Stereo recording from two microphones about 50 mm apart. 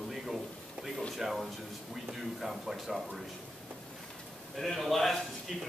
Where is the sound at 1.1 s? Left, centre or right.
Centre.